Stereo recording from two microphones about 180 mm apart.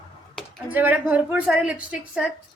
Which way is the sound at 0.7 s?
10° right (ahead or behind).